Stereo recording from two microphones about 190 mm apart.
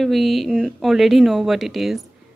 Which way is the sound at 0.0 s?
Centre (ahead or behind).